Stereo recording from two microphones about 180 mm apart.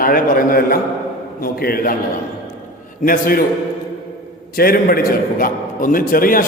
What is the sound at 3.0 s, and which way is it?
Speech, 55° left (ahead or behind).